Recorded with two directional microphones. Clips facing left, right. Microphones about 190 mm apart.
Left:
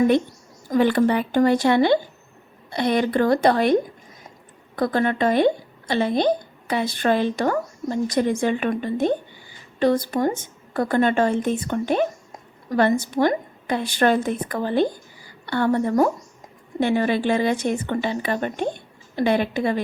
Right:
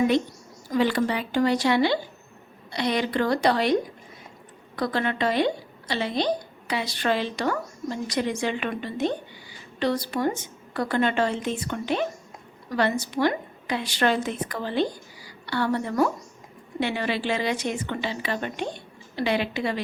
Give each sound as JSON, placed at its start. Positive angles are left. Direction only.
{"t": 0.7, "sound": "a woman's voice", "side_deg": 50}
{"t": 4.8, "sound": "a woman's voice", "side_deg": 50}